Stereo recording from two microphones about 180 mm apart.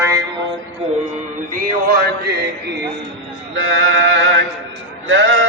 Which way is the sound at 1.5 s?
55° right (ahead or behind).